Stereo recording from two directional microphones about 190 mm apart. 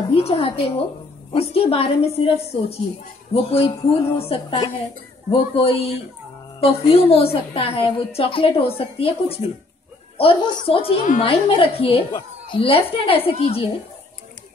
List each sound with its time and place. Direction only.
0.1 s a woman's voice: 30° left (ahead or behind)